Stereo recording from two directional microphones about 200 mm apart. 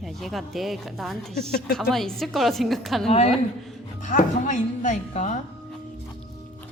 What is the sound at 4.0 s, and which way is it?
A woman's voice, 40° left (ahead or behind).